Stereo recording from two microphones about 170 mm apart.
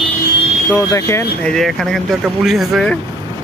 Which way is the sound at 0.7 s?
20° left (ahead or behind).